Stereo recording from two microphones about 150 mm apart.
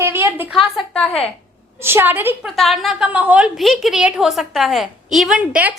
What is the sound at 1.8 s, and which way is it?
Speech, 15° right (ahead or behind).